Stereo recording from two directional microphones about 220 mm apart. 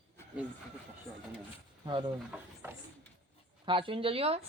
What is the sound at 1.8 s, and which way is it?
Speech, 20° right (ahead or behind).